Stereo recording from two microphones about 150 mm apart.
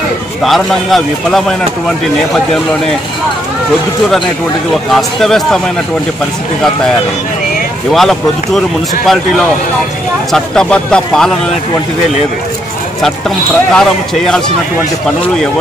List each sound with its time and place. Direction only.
0.4 s a man's voice: centre (ahead or behind)
4.9 s a man's voice: centre (ahead or behind)
7.9 s a man's voice: centre (ahead or behind)
13.7 s a man's voice: 5° left (ahead or behind)